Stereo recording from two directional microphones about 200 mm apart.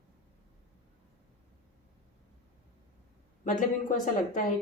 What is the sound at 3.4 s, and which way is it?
A woman's voice, 40° left (ahead or behind).